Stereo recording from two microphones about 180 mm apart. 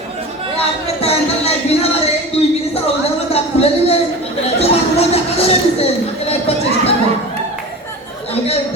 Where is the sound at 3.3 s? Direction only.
35° left (ahead or behind).